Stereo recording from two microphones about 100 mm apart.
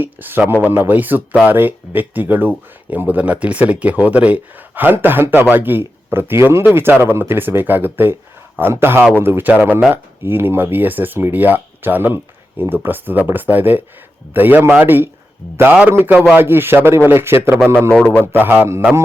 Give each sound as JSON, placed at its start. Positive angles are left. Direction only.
{"t": 0.0, "sound": "speech", "side_deg": -20}
{"t": 9.5, "sound": "speech", "side_deg": -10}
{"t": 9.9, "sound": "speech", "side_deg": -20}